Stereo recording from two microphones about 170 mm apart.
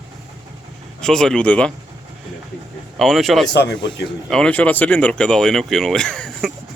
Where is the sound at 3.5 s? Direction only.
80° left.